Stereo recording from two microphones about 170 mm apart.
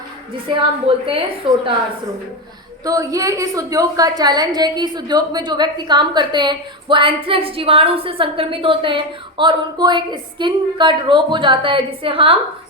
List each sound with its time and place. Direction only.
0.4 s a woman's voice: 30° right (ahead or behind)
2.8 s a woman's voice: 20° right (ahead or behind)